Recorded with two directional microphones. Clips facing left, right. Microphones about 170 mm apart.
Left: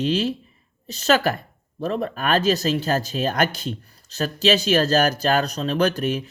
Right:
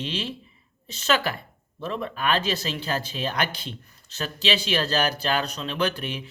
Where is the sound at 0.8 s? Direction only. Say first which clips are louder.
Left 5 dB; 40° left (ahead or behind).